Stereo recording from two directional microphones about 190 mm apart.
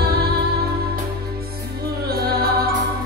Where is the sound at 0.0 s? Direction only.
55° right (ahead or behind).